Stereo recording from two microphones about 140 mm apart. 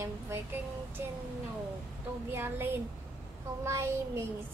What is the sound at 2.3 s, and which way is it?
Speech, 15° right (ahead or behind).